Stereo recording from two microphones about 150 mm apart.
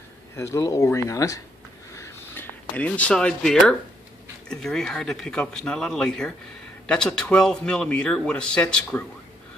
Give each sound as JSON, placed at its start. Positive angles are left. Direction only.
{"t": 0.4, "sound": "speech", "side_deg": 20}
{"t": 2.0, "sound": "a sound", "side_deg": 15}
{"t": 4.5, "sound": "speech", "side_deg": 5}